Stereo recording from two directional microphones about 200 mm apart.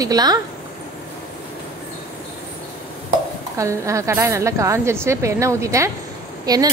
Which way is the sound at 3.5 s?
15° right (ahead or behind).